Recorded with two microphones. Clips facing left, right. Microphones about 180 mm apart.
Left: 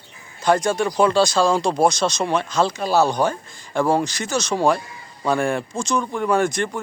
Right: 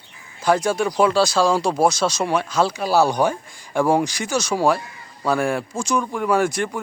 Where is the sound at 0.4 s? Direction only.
5° right (ahead or behind).